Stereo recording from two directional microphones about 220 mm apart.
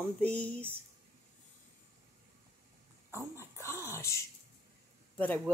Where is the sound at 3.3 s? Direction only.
10° left (ahead or behind).